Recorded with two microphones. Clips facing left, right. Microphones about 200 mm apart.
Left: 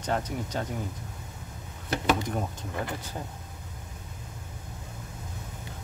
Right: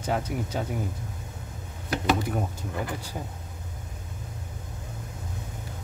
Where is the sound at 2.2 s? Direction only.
5° right (ahead or behind).